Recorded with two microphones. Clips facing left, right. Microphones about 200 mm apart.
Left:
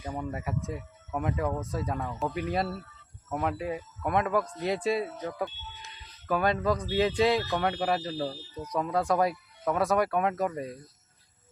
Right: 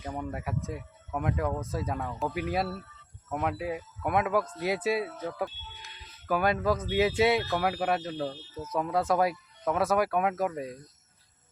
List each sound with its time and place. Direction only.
0.2 s speech: centre (ahead or behind)
5.1 s speech: 15° left (ahead or behind)
6.2 s speech: 5° right (ahead or behind)